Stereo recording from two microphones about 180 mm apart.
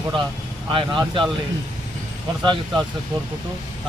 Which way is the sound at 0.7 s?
25° right (ahead or behind).